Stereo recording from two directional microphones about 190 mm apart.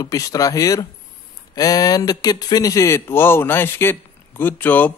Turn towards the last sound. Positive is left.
turn(degrees=10)  # may be behind; listen again after turning